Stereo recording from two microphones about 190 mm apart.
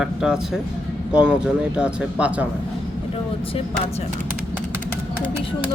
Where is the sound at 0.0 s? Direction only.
5° right (ahead or behind).